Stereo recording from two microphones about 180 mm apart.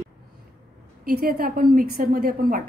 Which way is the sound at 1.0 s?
55° right (ahead or behind).